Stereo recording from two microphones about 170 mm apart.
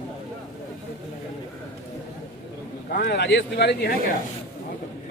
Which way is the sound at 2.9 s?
85° left.